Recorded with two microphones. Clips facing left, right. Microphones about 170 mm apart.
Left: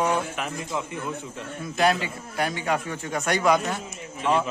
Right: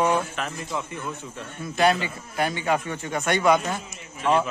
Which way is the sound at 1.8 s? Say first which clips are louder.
Right 1 dB; centre (ahead or behind).